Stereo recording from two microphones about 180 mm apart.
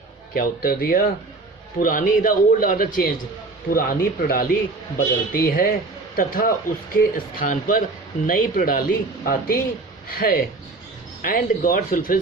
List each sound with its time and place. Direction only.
0.3 s a man's voice: 55° left (ahead or behind)